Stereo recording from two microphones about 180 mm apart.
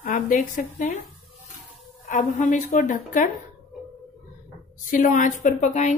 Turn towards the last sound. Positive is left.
turn(degrees=40)  # may be behind; listen again after turning